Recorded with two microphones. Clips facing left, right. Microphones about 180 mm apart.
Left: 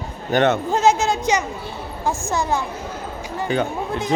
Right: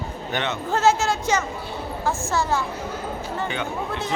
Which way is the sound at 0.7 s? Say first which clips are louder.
Left 2 dB; 15° left (ahead or behind).